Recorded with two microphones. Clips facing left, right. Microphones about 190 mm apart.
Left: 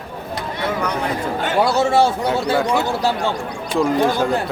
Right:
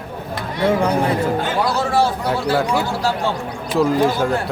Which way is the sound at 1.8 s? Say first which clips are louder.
Left 3 dB; 25° left (ahead or behind).